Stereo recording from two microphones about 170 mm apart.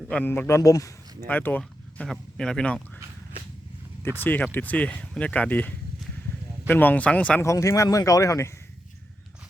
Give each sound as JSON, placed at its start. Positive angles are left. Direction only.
{"t": 0.1, "sound": "speech", "side_deg": 10}
{"t": 4.2, "sound": "speech", "side_deg": 10}